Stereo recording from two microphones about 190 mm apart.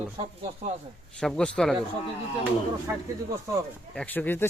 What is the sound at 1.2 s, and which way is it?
Speech, 5° left (ahead or behind).